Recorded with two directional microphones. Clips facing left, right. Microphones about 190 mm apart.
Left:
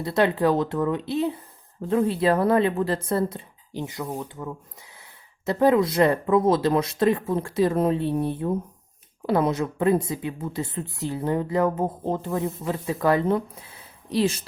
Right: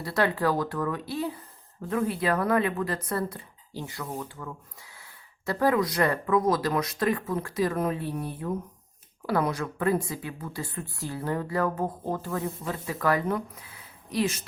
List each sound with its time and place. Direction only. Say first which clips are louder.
0.0 s a woman's voice: left 5 dB; 20° left (ahead or behind)